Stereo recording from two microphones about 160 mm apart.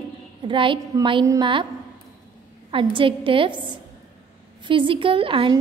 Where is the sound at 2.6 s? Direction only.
35° right (ahead or behind).